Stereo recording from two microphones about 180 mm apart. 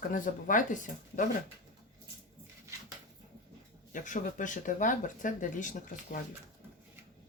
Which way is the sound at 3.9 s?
45° left (ahead or behind).